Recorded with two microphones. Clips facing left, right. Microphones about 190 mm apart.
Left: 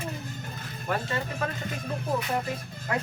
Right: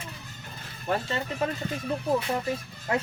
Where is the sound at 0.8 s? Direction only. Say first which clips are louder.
Right 1 dB; 25° right (ahead or behind).